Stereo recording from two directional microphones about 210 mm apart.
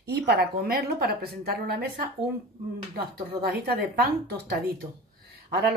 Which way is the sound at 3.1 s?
50° right (ahead or behind).